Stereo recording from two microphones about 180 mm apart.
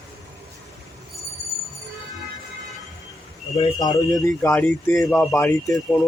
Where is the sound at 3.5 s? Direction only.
25° left (ahead or behind).